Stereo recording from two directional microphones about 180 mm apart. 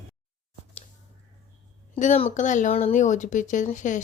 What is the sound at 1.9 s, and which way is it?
Speech, 35° left (ahead or behind).